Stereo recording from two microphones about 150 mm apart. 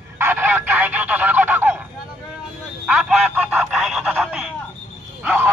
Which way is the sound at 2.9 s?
5° right (ahead or behind).